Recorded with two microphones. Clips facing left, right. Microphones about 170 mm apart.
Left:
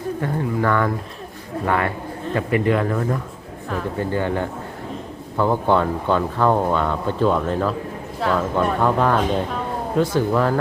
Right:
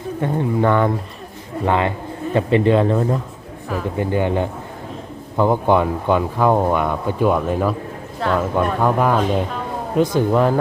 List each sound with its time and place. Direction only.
0.2 s speech: 20° right (ahead or behind)
8.2 s speech: centre (ahead or behind)
8.8 s speech: 10° right (ahead or behind)